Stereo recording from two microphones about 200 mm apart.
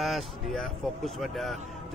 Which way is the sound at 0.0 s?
Centre (ahead or behind).